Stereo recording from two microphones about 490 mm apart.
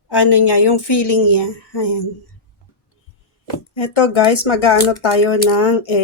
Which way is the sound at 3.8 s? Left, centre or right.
Left.